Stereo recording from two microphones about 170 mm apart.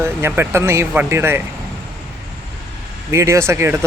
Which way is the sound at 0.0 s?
15° right (ahead or behind).